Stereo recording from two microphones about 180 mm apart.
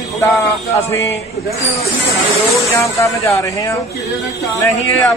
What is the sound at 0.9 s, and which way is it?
Speech, 15° left (ahead or behind).